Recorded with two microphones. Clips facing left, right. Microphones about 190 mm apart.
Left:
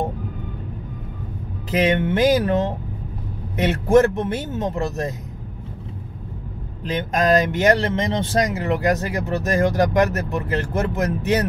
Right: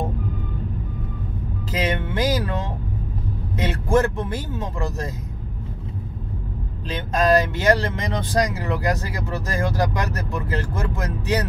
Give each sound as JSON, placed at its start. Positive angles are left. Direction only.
{"t": 1.7, "sound": "speech", "side_deg": 20}
{"t": 6.8, "sound": "speech", "side_deg": 15}